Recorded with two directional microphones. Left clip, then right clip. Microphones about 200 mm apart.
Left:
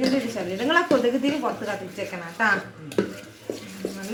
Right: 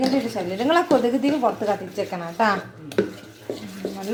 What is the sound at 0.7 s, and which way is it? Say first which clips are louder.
Speech: right 1 dB; 45° right (ahead or behind).